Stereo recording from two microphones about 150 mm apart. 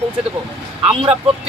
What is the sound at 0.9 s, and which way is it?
Speech, 35° right (ahead or behind).